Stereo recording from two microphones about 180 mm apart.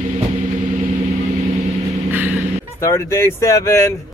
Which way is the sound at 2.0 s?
10° right (ahead or behind).